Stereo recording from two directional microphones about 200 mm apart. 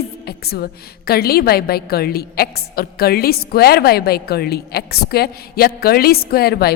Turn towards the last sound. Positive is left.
turn(degrees=50)  # may be behind; listen again after turning